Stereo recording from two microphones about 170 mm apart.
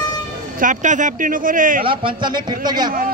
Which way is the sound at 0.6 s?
45° right (ahead or behind).